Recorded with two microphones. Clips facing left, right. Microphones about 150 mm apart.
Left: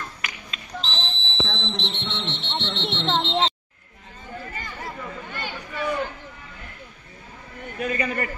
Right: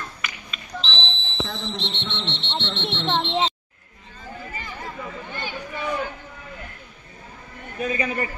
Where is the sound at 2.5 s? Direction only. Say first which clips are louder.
Even; centre (ahead or behind).